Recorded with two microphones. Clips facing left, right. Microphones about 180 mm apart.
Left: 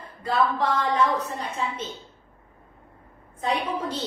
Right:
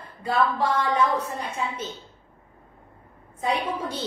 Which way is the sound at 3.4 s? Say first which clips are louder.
Even; 10° right (ahead or behind).